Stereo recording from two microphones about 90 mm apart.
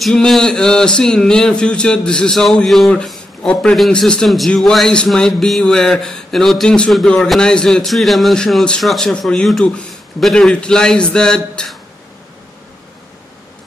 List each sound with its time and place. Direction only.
0.0 s speech: 5° left (ahead or behind)